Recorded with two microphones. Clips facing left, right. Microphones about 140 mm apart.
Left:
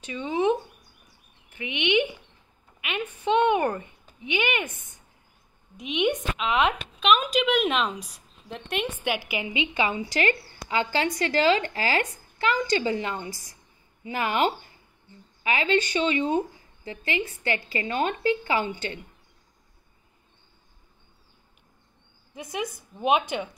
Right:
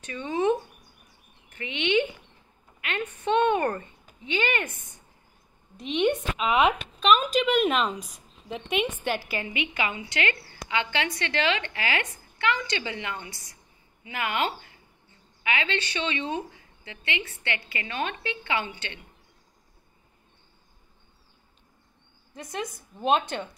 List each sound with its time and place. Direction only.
0.0 s a woman's voice: 15° left (ahead or behind)
1.6 s a woman's voice: 15° left (ahead or behind)
3.3 s a woman's voice: 15° left (ahead or behind)
5.8 s speech: 5° left (ahead or behind)
9.0 s a woman's voice: 15° left (ahead or behind); by 14.4 s 35° left (ahead or behind)
15.4 s a woman's voice: 35° left (ahead or behind)
22.3 s a woman's voice: 10° left (ahead or behind)